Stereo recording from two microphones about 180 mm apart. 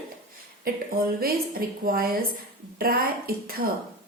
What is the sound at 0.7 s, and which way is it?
A woman's voice, 55° right (ahead or behind).